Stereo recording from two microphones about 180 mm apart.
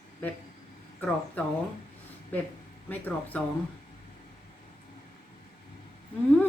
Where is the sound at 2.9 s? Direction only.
10° left (ahead or behind).